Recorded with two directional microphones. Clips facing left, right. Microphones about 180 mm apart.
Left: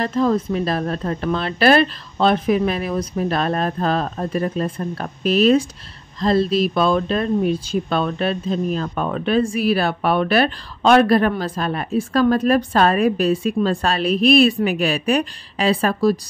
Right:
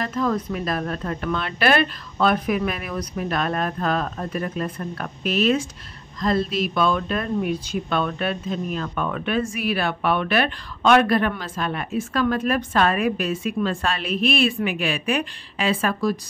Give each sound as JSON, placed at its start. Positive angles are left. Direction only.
{"t": 0.0, "sound": "speech", "side_deg": 30}